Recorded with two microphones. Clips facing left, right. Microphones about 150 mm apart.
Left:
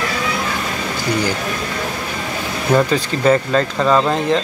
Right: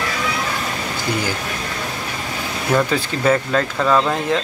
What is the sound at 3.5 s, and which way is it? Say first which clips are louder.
Speech: left 2 dB; 10° left (ahead or behind).